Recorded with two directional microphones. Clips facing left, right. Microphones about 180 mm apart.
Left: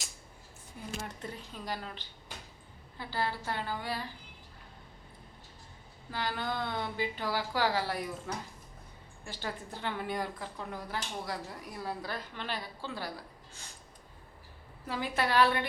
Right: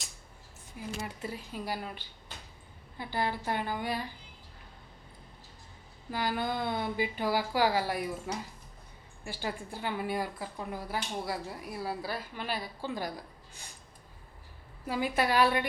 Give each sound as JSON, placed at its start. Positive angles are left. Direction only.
{"t": 0.8, "sound": "speech", "side_deg": -5}
{"t": 6.1, "sound": "speech", "side_deg": -10}
{"t": 14.8, "sound": "speech", "side_deg": -10}